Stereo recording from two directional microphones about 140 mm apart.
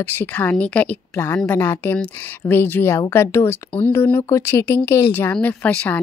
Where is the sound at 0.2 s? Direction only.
10° left (ahead or behind).